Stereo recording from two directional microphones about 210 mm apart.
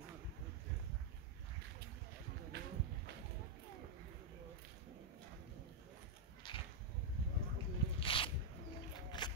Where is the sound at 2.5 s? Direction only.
50° right (ahead or behind).